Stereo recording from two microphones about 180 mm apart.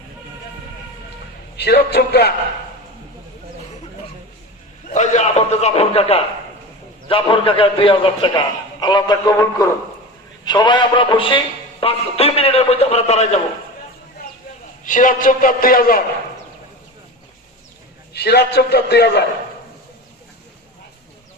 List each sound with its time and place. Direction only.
1.5 s a man's voice: 65° left (ahead or behind)
4.9 s a sound: 45° left (ahead or behind)
7.1 s a man's voice: 30° left (ahead or behind)
14.8 s a man's voice: 45° left (ahead or behind)
18.1 s a man's voice: 65° left (ahead or behind)